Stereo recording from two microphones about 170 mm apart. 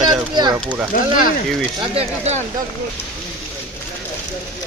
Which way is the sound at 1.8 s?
35° right (ahead or behind).